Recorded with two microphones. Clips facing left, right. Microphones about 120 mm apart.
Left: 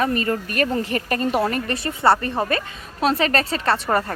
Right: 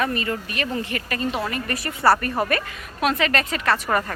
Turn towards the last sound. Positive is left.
turn(degrees=30)  # may be behind; listen again after turning